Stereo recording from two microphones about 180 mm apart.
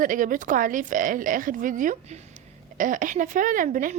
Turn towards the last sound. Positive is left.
turn(degrees=-50)  # may be behind; listen again after turning